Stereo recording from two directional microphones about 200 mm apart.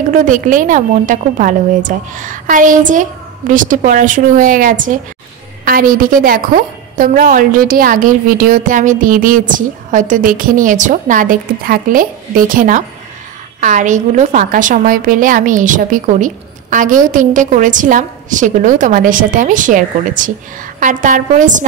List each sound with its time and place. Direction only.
0.1 s a woman's voice: 40° right (ahead or behind)